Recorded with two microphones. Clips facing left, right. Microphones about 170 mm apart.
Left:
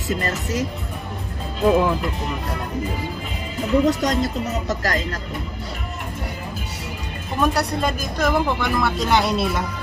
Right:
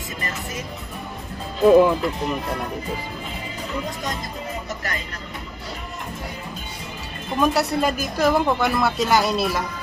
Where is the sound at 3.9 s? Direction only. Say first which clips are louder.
Left 9 dB; 85° left.